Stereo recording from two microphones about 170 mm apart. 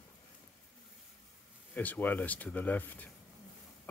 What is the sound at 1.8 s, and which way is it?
Speech, 10° left (ahead or behind).